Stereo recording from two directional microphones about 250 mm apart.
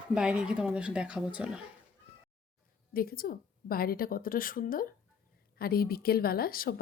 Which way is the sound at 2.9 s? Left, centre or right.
Left.